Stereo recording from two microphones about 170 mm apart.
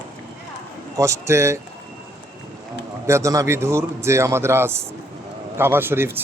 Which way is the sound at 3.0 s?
15° right (ahead or behind).